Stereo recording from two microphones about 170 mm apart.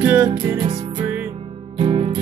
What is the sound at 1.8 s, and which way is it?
Music, 35° right (ahead or behind).